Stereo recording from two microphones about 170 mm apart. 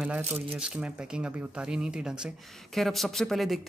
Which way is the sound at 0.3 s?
5° right (ahead or behind).